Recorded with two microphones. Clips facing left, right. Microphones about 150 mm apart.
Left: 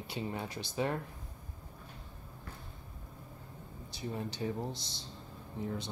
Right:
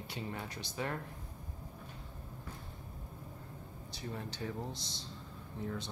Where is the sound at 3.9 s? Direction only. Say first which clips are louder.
Left 4 dB; 15° left (ahead or behind).